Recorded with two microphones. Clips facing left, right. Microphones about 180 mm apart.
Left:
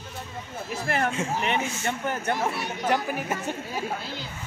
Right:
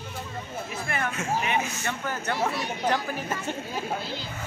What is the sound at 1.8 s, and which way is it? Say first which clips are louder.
Speech: left 3 dB; 25° left (ahead or behind).